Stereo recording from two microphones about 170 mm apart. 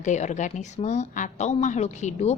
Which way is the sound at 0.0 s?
45° left (ahead or behind).